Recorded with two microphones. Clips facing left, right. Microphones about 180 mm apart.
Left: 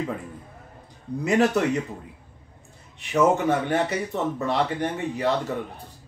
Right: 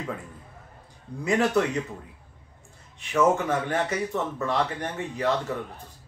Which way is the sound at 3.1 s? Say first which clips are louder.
Left 2 dB; 15° left (ahead or behind).